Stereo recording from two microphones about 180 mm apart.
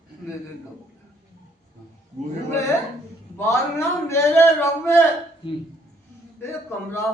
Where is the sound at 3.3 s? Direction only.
15° left (ahead or behind).